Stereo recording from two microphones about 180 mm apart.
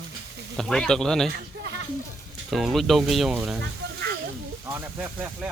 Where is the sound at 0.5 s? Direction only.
Centre (ahead or behind).